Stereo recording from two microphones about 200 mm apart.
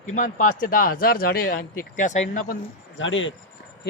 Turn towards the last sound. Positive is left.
turn(degrees=70)  # may be behind; listen again after turning